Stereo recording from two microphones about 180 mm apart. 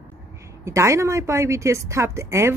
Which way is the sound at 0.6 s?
15° right (ahead or behind).